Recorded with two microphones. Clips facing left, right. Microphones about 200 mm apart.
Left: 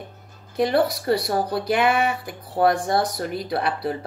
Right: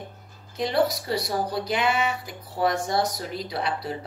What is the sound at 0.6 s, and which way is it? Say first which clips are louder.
Speech: left 3 dB; 60° left (ahead or behind).